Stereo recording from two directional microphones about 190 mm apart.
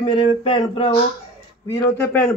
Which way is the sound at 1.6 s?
15° left (ahead or behind).